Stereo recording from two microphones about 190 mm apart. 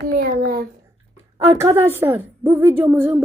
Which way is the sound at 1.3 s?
15° right (ahead or behind).